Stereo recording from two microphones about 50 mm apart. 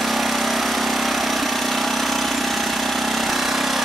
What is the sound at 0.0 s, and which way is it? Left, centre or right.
Lawn mower, centre.